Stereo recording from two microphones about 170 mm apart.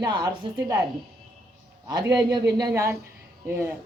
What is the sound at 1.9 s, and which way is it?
A woman's voice, 20° right (ahead or behind).